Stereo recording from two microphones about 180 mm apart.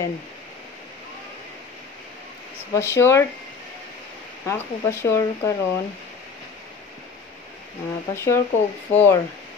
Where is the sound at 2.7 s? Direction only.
15° left (ahead or behind).